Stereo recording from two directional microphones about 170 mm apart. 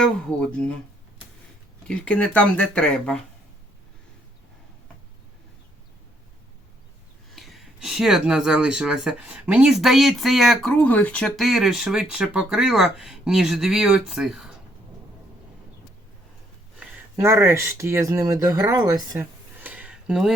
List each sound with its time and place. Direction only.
0.0 s speech: 5° left (ahead or behind)
1.9 s speech: 5° left (ahead or behind)
7.3 s speech: centre (ahead or behind)
17.2 s speech: 15° right (ahead or behind)
18.9 s a sound: 15° right (ahead or behind)